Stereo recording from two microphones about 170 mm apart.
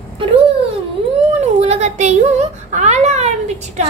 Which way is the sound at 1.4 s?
40° right (ahead or behind).